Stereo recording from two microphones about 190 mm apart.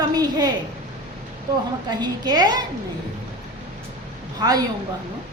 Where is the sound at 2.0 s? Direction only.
20° right (ahead or behind).